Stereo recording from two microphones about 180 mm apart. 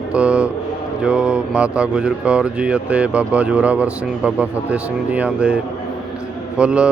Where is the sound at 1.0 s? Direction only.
5° right (ahead or behind).